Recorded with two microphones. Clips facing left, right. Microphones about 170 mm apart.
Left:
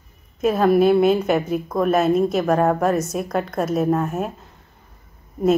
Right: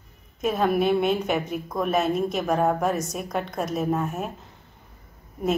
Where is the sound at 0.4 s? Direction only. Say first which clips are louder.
Left 6 dB; centre (ahead or behind).